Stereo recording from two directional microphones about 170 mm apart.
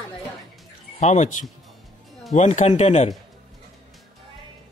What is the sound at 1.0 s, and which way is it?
Speech, 45° left (ahead or behind).